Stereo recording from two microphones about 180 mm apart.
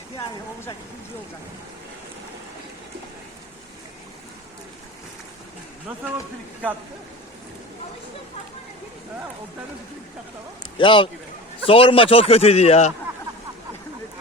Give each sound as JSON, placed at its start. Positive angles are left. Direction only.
{"t": 10.6, "sound": "a man's voice", "side_deg": 25}